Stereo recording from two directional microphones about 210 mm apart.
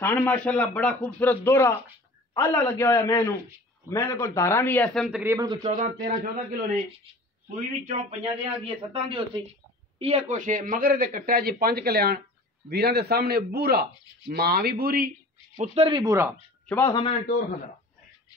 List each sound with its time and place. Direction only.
0.0 s a man's voice: 10° left (ahead or behind)
5.2 s speech: 15° right (ahead or behind)
5.6 s a man's voice: 40° right (ahead or behind)
7.8 s a man's voice: 30° right (ahead or behind); by 15.0 s 45° right (ahead or behind)
15.5 s speech: 30° right (ahead or behind); by 16.3 s 15° right (ahead or behind)
16.6 s a man's voice: 10° left (ahead or behind)